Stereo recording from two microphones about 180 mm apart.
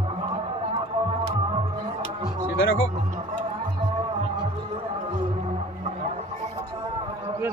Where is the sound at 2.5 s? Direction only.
90° left.